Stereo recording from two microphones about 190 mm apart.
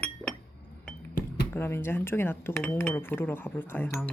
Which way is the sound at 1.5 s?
10° left (ahead or behind).